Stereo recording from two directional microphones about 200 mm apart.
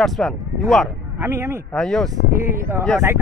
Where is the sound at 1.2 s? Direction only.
10° right (ahead or behind).